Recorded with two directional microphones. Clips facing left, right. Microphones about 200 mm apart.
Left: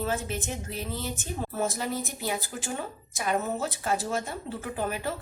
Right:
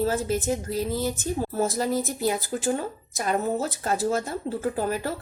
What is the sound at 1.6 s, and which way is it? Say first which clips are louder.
A woman's voice: right 5 dB; 40° right (ahead or behind).